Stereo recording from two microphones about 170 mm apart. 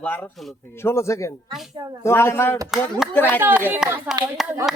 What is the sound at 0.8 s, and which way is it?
A man's voice, 15° left (ahead or behind).